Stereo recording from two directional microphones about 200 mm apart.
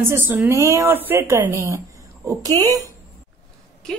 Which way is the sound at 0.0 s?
10° right (ahead or behind).